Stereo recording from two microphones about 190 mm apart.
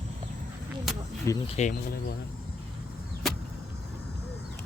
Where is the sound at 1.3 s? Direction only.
15° left (ahead or behind).